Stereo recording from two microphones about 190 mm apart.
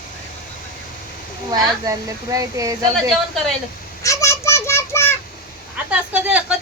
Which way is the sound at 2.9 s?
Centre (ahead or behind).